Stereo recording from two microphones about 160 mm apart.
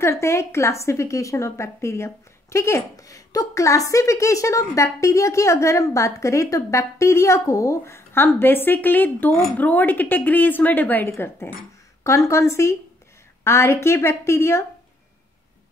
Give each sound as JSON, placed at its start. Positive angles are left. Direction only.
{"t": 0.0, "sound": "a woman's voice", "side_deg": 15}